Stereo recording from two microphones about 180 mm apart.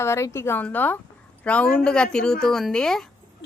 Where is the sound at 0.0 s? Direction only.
15° left (ahead or behind).